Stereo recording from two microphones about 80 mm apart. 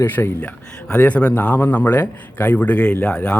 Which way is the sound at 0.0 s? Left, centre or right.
Left.